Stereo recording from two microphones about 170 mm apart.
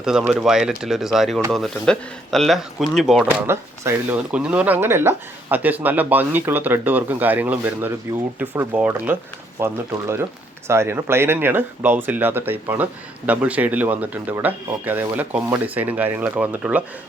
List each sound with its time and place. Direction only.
0.0 s speech: 5° right (ahead or behind)
3.2 s speech: 15° right (ahead or behind)